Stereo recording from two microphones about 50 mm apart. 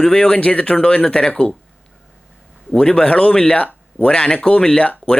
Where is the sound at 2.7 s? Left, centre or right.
Centre.